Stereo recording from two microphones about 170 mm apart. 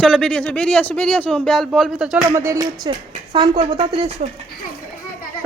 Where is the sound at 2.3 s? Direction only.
15° right (ahead or behind).